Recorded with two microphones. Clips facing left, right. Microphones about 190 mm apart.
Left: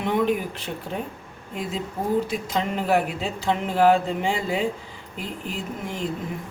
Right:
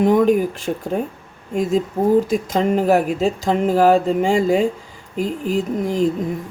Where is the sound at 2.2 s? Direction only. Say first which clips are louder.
Right 8 dB; 45° right (ahead or behind).